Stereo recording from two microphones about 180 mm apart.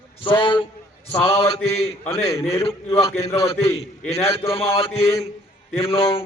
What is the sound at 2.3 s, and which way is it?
Speech, 30° left (ahead or behind).